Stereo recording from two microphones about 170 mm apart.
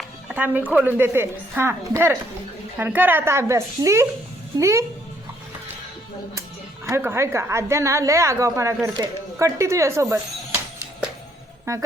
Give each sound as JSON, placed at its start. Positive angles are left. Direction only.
{"t": 0.3, "sound": "a woman's voice", "side_deg": -10}
{"t": 6.8, "sound": "a woman's voice", "side_deg": -15}
{"t": 11.7, "sound": "a woman's voice", "side_deg": -15}